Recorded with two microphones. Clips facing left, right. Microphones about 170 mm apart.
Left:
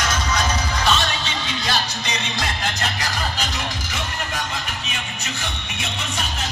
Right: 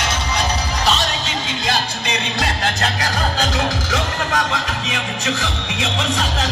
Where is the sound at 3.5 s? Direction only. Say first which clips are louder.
Right 8 dB; 90° right.